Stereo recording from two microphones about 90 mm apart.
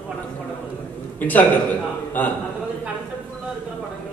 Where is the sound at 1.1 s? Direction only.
20° left (ahead or behind).